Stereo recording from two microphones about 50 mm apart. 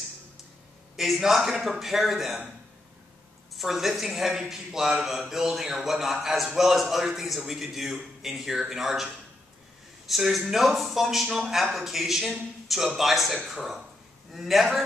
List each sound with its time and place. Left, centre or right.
0.9 s speech: centre
3.5 s a man's voice: centre